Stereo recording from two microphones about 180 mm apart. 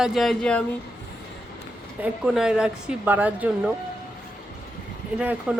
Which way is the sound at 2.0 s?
5° right (ahead or behind).